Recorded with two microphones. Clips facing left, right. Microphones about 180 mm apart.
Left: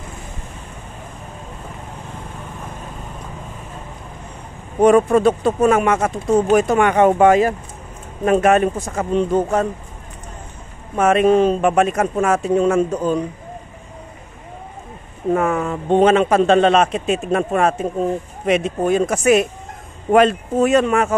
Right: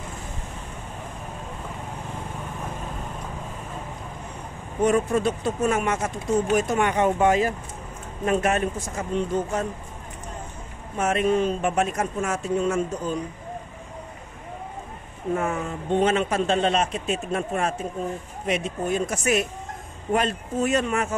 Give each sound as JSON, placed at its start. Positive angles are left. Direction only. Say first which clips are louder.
{"t": 4.8, "sound": "speech", "louder": "left 9 dB", "side_deg": 90}
{"t": 11.0, "sound": "speech", "louder": "left 8 dB", "side_deg": 90}
{"t": 15.3, "sound": "speech", "louder": "left 7 dB", "side_deg": 90}